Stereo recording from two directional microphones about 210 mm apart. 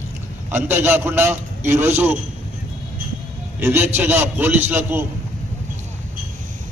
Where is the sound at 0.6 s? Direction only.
10° right (ahead or behind).